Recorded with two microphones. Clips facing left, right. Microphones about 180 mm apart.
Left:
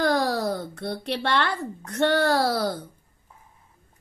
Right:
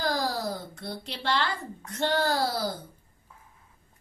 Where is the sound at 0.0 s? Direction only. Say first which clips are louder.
Left 6 dB; 65° left (ahead or behind).